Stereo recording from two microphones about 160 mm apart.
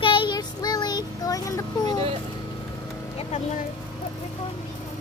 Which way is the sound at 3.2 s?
40° left (ahead or behind).